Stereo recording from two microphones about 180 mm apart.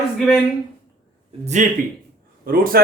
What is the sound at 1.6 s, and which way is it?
Speech, 45° right (ahead or behind).